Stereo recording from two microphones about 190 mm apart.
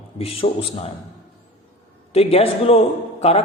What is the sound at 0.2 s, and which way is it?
Speech, 30° left (ahead or behind).